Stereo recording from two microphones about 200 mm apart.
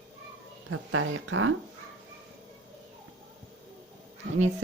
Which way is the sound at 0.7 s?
90° right.